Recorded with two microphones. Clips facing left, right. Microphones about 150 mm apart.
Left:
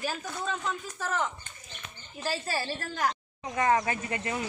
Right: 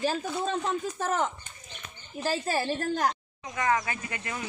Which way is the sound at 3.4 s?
30° left (ahead or behind).